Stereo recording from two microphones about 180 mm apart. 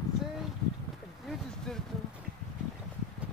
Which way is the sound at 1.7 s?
5° left (ahead or behind).